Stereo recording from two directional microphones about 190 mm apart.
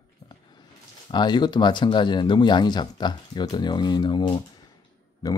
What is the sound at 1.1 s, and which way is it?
Speech, 25° left (ahead or behind).